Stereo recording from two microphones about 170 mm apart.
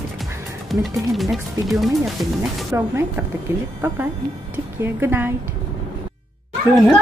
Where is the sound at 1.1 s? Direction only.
Centre (ahead or behind).